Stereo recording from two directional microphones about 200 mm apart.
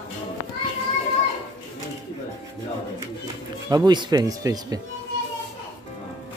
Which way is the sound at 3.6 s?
20° right (ahead or behind).